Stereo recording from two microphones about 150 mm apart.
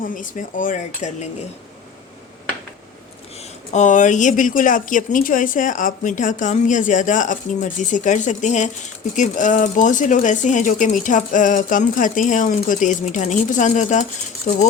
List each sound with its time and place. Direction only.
0.0 s speech: 60° left (ahead or behind)
3.3 s speech: 45° left (ahead or behind)